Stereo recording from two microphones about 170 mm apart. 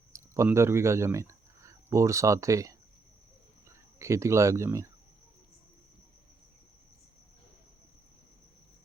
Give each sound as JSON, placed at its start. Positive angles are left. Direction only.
{"t": 0.1, "sound": "speech", "side_deg": -15}